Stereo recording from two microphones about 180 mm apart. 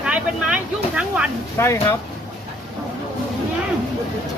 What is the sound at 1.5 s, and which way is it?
Speech, 15° left (ahead or behind).